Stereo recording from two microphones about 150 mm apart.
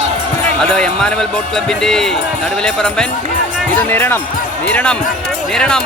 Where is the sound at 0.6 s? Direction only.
5° left (ahead or behind).